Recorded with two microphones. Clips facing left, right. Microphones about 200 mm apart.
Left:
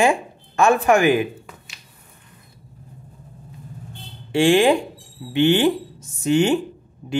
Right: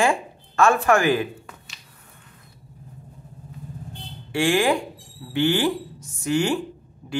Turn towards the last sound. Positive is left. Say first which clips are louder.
# left 5 dB
turn(degrees=20)  # may be behind; listen again after turning